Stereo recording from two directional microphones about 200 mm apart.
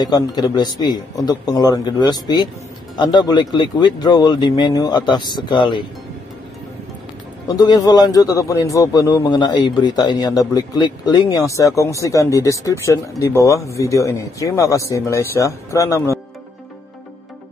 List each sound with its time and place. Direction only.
0.0 s a man's voice: 20° left (ahead or behind)
7.5 s a man's voice: 20° left (ahead or behind)